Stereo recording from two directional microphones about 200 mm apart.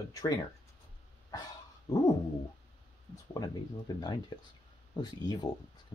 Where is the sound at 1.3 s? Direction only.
20° left (ahead or behind).